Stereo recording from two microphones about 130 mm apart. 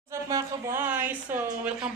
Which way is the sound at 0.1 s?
25° right (ahead or behind).